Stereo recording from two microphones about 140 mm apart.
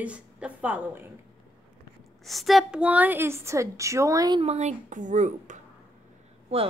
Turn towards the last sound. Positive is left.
turn(degrees=-45)  # may be behind; listen again after turning